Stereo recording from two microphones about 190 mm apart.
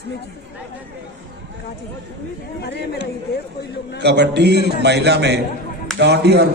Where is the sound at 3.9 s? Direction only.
60° right (ahead or behind).